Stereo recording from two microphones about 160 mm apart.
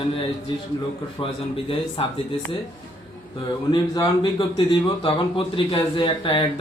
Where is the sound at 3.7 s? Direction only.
25° left (ahead or behind).